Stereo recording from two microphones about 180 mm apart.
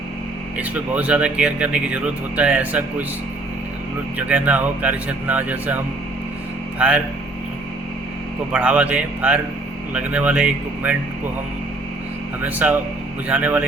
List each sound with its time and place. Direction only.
0.5 s speech: 5° right (ahead or behind)
4.2 s speech: 5° right (ahead or behind)
8.5 s speech: 5° right (ahead or behind)
12.4 s speech: 10° right (ahead or behind)